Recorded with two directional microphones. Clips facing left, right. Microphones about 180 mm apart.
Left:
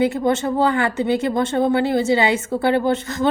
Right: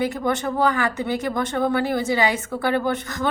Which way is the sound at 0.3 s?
25° left (ahead or behind).